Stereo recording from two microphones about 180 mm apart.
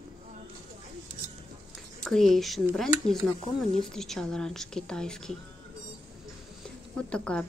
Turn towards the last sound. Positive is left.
turn(degrees=5)  # may be behind; listen again after turning